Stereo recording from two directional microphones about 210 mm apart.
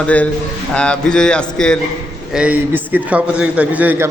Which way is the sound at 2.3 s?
5° right (ahead or behind).